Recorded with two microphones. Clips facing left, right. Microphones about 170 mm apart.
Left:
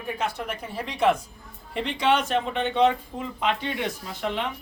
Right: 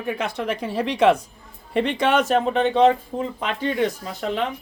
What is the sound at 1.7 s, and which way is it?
Speech, 60° right (ahead or behind).